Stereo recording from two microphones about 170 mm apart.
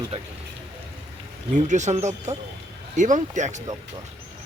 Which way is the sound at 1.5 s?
45° right (ahead or behind).